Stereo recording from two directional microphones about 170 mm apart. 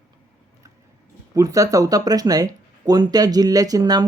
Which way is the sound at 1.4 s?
20° right (ahead or behind).